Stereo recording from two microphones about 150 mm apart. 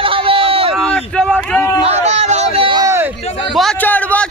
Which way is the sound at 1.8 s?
50° right (ahead or behind).